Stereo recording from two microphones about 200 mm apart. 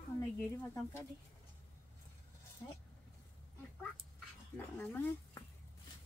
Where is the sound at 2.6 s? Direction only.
10° left (ahead or behind).